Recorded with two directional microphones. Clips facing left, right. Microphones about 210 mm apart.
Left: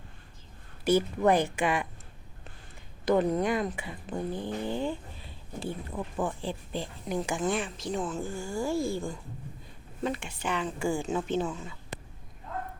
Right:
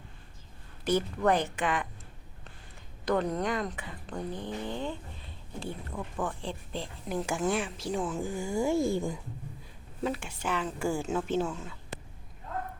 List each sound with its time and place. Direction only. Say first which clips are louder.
0.9 s speech: left 3 dB; 10° left (ahead or behind)
3.1 s speech: left 4 dB; 5° left (ahead or behind); by 9.1 s 20° right (ahead or behind)
10.0 s speech: even; 5° right (ahead or behind)